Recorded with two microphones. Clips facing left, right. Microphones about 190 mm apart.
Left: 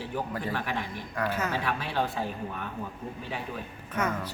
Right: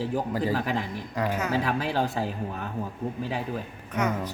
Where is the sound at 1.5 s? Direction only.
40° right (ahead or behind).